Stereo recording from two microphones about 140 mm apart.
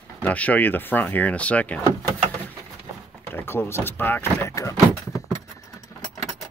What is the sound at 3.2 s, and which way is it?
Speech, 15° left (ahead or behind).